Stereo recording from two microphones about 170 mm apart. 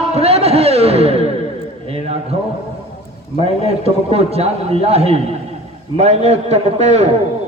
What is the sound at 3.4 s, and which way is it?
A man's voice, 35° right (ahead or behind).